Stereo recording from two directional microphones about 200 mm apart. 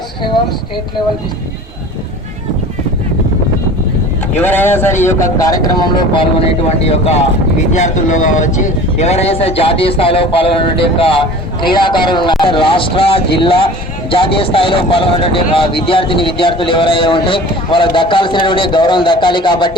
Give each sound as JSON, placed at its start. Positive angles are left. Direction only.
{"t": 4.4, "sound": "speech", "side_deg": 10}
{"t": 6.8, "sound": "speech", "side_deg": 30}